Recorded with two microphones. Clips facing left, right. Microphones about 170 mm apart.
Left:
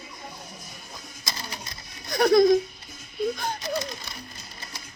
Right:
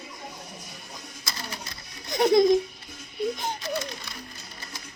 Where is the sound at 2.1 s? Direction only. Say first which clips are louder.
Left 1 dB; 20° right (ahead or behind).